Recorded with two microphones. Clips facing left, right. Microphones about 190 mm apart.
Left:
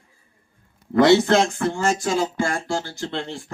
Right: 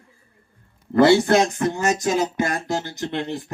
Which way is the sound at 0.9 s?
10° right (ahead or behind).